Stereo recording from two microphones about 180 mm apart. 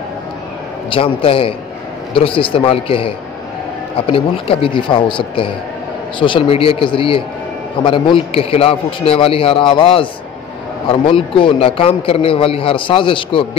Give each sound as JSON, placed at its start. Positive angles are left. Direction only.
{"t": 0.8, "sound": "a man's voice", "side_deg": 30}